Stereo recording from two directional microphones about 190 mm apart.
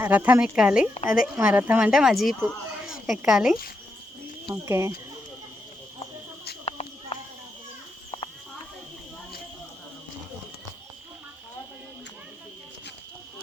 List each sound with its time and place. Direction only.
0.0 s speech: 10° right (ahead or behind)
4.4 s speech: 15° right (ahead or behind)
6.7 s a sound: 30° left (ahead or behind)